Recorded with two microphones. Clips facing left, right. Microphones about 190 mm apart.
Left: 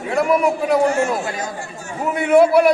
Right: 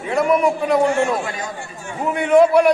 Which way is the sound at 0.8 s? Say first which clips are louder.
Even; 40° left (ahead or behind).